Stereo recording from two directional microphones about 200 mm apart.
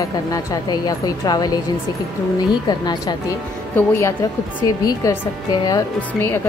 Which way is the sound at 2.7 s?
20° left (ahead or behind).